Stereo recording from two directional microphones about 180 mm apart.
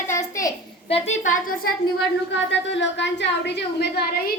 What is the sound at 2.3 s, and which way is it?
A woman's voice, 80° left.